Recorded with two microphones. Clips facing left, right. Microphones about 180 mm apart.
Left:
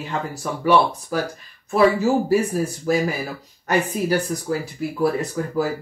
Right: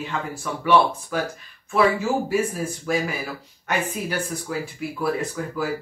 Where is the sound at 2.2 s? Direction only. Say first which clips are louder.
Left 4 dB; 40° left (ahead or behind).